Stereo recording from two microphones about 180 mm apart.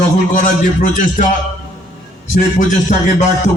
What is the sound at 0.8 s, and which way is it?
Music, 45° left (ahead or behind).